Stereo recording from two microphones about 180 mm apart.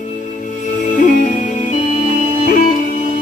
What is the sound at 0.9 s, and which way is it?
Music, 45° left (ahead or behind).